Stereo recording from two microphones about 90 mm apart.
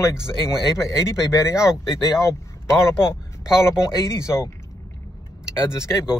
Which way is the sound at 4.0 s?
35° left (ahead or behind).